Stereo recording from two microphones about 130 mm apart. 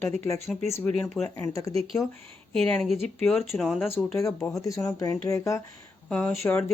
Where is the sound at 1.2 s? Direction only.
20° left (ahead or behind).